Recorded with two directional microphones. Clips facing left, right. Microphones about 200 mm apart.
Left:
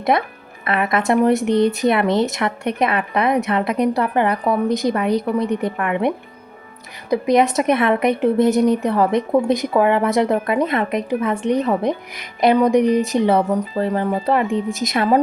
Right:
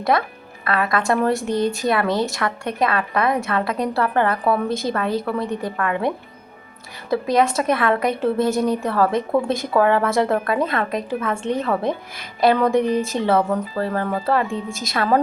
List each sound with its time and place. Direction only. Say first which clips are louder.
0.0 s a woman's voice: left 1 dB; 20° left (ahead or behind)